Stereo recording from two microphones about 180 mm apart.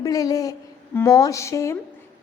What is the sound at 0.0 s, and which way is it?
A woman's voice, 20° left (ahead or behind).